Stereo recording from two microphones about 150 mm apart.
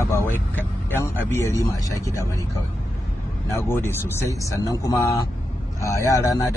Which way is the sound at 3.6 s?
15° left (ahead or behind).